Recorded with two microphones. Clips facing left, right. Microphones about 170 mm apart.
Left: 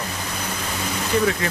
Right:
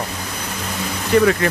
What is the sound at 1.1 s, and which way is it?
Speech, 65° right (ahead or behind).